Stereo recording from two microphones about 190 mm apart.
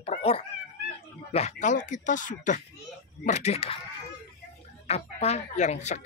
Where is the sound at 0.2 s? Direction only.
30° left (ahead or behind).